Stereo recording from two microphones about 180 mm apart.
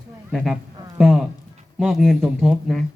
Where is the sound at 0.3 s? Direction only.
5° right (ahead or behind).